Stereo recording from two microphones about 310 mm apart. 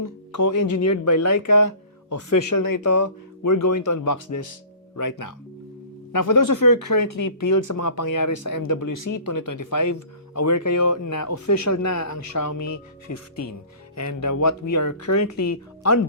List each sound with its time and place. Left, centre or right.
0.0 s speech: left
4.9 s speech: left
15.0 s speech: left